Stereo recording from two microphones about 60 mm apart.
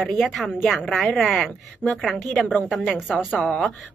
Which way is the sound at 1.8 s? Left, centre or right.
Centre.